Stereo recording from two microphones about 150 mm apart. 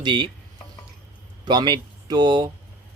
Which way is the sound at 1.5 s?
30° right (ahead or behind).